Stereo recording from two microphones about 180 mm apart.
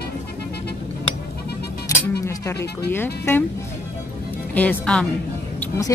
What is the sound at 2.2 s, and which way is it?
A woman's voice, 15° left (ahead or behind).